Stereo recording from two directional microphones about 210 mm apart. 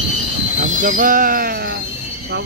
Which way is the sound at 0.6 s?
40° right (ahead or behind).